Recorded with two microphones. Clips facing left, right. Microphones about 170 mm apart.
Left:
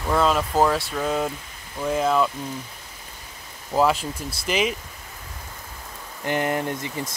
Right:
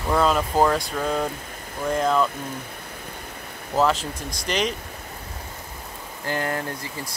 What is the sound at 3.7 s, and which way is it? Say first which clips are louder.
Speech: left 1 dB; 10° left (ahead or behind).